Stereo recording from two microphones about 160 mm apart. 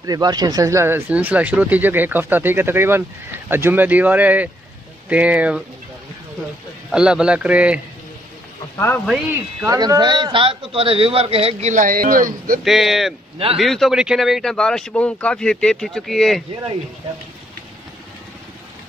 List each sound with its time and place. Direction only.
0.0 s speech: 25° right (ahead or behind); by 5.6 s 10° right (ahead or behind)
6.9 s speech: 5° right (ahead or behind)
8.7 s a man's voice: 15° left (ahead or behind)
9.0 s speech: centre (ahead or behind)
9.7 s a man's voice: 25° right (ahead or behind)
11.7 s speech: 60° right (ahead or behind)
12.6 s speech: centre (ahead or behind)